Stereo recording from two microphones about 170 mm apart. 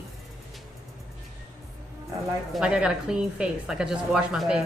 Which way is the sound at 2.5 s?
5° right (ahead or behind).